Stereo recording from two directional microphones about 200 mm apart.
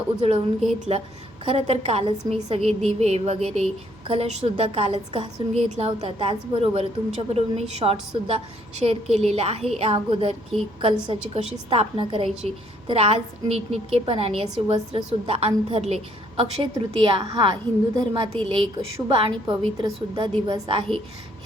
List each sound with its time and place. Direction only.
0.2 s a woman's voice: 30° right (ahead or behind)